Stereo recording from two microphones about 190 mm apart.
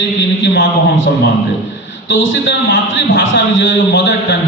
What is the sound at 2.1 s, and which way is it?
A man's voice, 80° left.